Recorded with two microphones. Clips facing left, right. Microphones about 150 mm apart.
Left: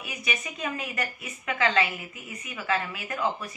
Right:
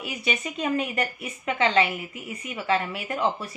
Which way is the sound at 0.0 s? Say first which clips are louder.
Right 5 dB; 30° right (ahead or behind).